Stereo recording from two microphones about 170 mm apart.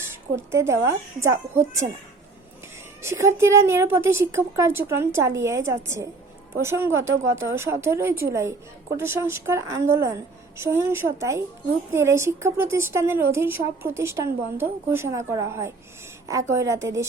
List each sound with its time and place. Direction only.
0.0 s a woman's voice: 15° right (ahead or behind)
3.0 s a woman's voice: 15° right (ahead or behind)